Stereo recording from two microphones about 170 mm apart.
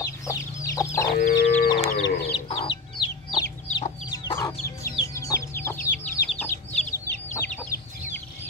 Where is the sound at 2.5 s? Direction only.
30° left (ahead or behind); by 5.7 s 15° left (ahead or behind).